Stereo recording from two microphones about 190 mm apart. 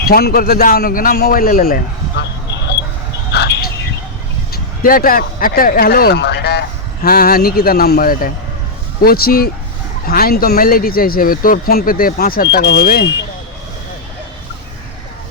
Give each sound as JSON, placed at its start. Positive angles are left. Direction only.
{"t": 0.0, "sound": "speech", "side_deg": 55}
{"t": 3.3, "sound": "a sound", "side_deg": 60}
{"t": 4.5, "sound": "speech", "side_deg": 50}